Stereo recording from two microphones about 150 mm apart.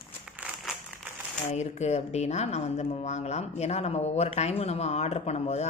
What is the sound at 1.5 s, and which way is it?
A woman's voice, 50° left (ahead or behind).